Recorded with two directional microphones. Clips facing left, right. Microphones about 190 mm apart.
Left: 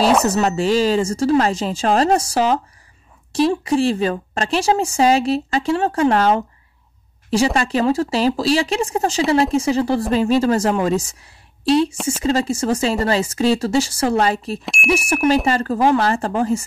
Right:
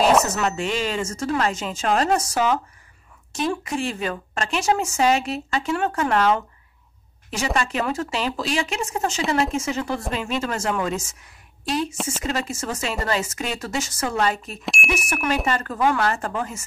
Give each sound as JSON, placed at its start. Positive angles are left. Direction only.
{"t": 0.2, "sound": "speech", "side_deg": 35}
{"t": 14.6, "sound": "speech", "side_deg": 0}
{"t": 14.9, "sound": "speech", "side_deg": 30}